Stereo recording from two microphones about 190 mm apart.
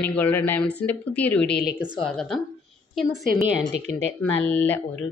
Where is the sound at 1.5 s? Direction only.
55° left (ahead or behind).